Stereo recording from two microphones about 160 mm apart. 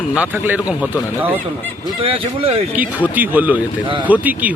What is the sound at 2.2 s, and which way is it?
Speech, 35° right (ahead or behind).